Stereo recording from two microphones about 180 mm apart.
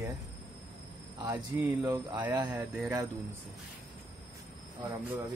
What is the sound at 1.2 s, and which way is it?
Speech, 15° right (ahead or behind).